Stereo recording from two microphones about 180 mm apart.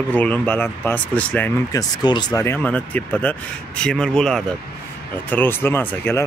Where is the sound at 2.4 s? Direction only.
10° left (ahead or behind).